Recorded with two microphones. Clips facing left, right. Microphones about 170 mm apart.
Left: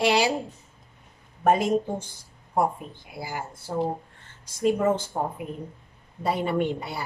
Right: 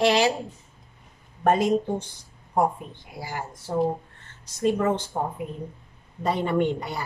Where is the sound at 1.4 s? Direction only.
5° left (ahead or behind).